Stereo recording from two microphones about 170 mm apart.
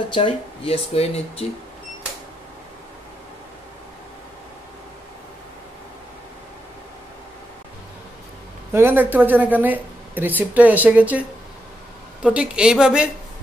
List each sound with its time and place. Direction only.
0.1 s speech: 35° left (ahead or behind)
8.7 s a woman's voice: 10° right (ahead or behind)